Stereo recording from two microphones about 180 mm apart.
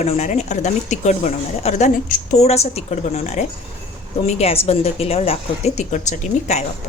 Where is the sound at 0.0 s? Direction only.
35° left (ahead or behind).